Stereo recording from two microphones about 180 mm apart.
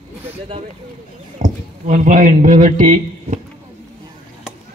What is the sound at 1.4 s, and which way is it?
Speech, 40° right (ahead or behind).